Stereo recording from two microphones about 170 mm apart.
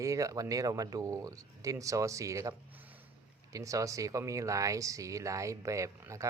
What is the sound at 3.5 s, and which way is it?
Speech, 20° right (ahead or behind).